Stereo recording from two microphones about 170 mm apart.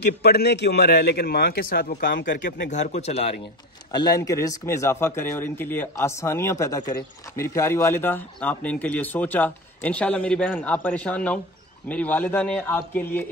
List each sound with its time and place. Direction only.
0.0 s a man's voice: 75° left (ahead or behind)
2.4 s speech: 45° left (ahead or behind)
3.9 s a man's voice: 20° left (ahead or behind)